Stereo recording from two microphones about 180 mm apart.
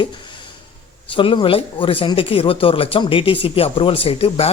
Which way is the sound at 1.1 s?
30° left (ahead or behind).